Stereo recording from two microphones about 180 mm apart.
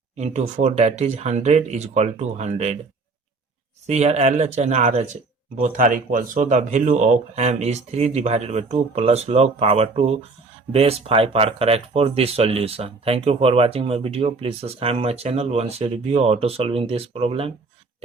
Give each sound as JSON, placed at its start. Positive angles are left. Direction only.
{"t": 0.2, "sound": "speech", "side_deg": -40}
{"t": 3.8, "sound": "speech", "side_deg": -35}